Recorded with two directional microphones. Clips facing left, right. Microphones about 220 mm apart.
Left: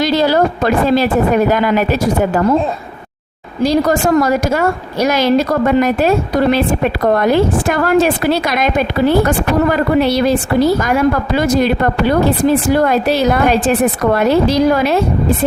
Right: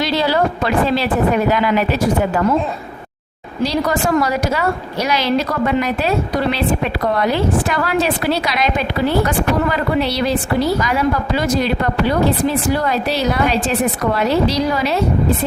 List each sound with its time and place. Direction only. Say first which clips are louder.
0.0 s a woman's voice: left 4 dB; 45° left (ahead or behind)
3.6 s a woman's voice: left 5 dB; 45° left (ahead or behind)